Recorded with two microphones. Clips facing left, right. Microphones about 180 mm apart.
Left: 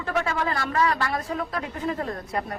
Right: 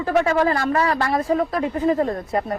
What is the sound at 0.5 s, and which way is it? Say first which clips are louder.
Speech: right 5 dB; 50° right (ahead or behind).